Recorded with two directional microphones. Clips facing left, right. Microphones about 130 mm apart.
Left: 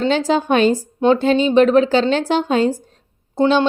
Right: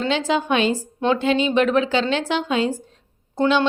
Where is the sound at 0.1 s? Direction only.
40° left (ahead or behind).